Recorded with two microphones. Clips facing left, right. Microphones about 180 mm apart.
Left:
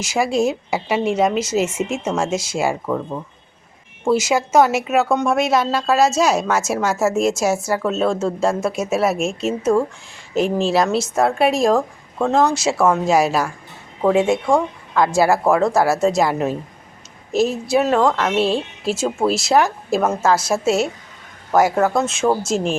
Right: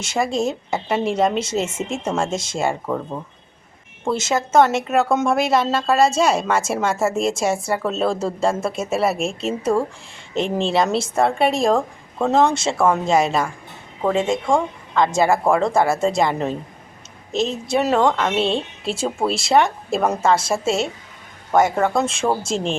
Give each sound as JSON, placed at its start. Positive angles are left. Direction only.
{"t": 0.0, "sound": "speech", "side_deg": 10}
{"t": 4.0, "sound": "speech", "side_deg": 10}
{"t": 7.2, "sound": "a woman's voice", "side_deg": -30}
{"t": 7.7, "sound": "speech", "side_deg": 0}